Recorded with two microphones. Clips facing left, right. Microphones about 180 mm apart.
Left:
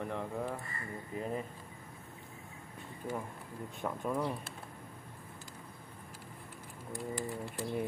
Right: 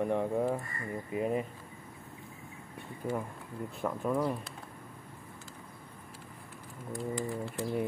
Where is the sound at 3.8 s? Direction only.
5° right (ahead or behind).